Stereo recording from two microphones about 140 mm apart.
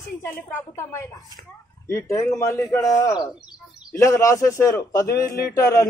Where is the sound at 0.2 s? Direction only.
15° left (ahead or behind).